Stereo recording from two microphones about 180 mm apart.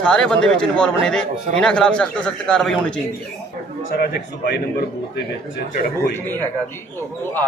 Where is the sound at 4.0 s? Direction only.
60° left (ahead or behind).